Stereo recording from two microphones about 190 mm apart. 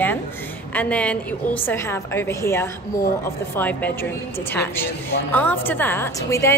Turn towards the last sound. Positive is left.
turn(degrees=15)  # may be behind; listen again after turning